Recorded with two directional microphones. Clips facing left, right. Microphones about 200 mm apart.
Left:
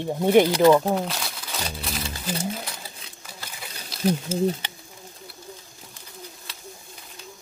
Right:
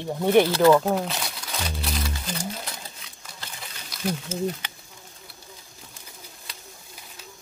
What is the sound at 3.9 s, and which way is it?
Speech, 30° left (ahead or behind).